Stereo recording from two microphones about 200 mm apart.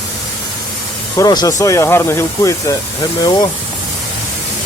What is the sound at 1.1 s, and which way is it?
Speech, 20° left (ahead or behind).